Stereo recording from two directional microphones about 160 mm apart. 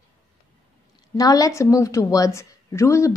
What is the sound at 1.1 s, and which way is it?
A woman's voice, 20° left (ahead or behind).